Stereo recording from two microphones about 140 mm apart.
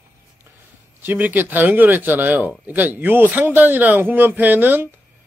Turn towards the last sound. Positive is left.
turn(degrees=-15)  # may be behind; listen again after turning